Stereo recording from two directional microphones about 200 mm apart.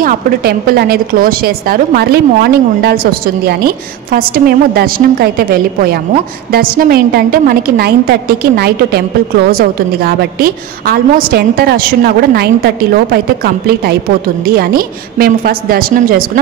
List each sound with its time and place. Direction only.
0.0 s a woman's voice: 50° right (ahead or behind)